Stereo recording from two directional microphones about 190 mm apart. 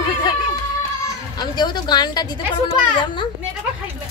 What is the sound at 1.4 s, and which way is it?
Speech, 20° left (ahead or behind).